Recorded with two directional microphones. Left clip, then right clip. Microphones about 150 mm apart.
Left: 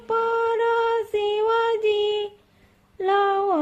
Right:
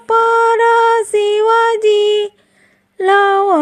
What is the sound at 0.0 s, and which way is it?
Music, 40° right (ahead or behind).